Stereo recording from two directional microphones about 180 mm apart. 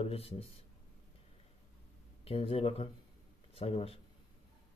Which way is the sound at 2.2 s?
30° left (ahead or behind).